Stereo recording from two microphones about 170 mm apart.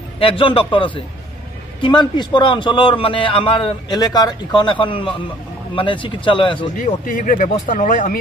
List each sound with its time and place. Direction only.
0.2 s a man's voice: 30° left (ahead or behind)
6.8 s speech: 50° left (ahead or behind)